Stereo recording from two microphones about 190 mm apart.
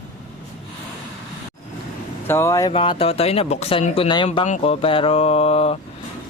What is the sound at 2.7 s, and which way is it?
Speech, 30° left (ahead or behind).